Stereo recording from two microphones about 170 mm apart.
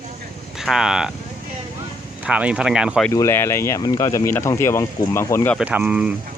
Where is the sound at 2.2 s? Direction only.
5° right (ahead or behind).